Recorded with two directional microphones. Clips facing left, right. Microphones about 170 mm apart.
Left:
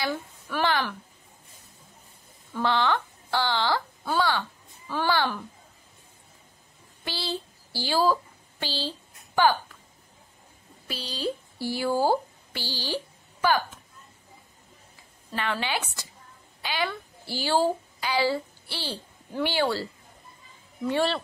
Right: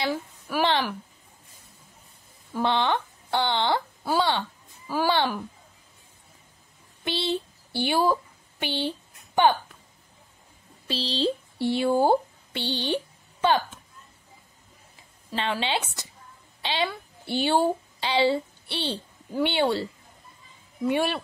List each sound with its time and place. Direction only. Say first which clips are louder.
0.1 s speech: right 2 dB; 10° right (ahead or behind)
2.5 s speech: right 1 dB; 20° right (ahead or behind)
4.8 s a woman's voice: right 2 dB; 10° right (ahead or behind)
7.1 s speech: right 5 dB; 20° right (ahead or behind)
10.9 s speech: right 5 dB; 30° right (ahead or behind)
15.3 s a child's voice: right 2 dB; 25° right (ahead or behind)